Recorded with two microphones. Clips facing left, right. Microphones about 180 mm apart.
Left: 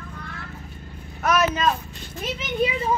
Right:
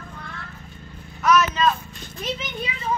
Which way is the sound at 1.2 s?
55° left (ahead or behind).